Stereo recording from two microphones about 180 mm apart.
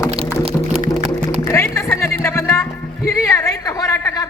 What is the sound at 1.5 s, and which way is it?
Music, 15° left (ahead or behind).